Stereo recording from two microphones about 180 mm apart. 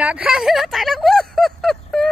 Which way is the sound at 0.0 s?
5° right (ahead or behind).